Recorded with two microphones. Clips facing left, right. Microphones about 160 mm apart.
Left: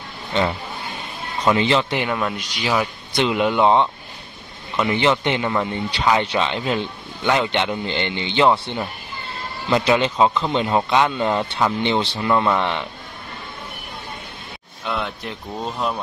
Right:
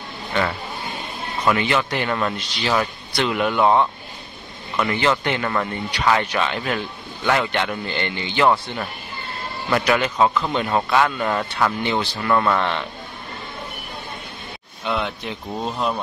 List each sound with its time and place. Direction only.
0.3 s speech: 20° left (ahead or behind)
2.0 s speech: 10° left (ahead or behind)
14.9 s speech: centre (ahead or behind)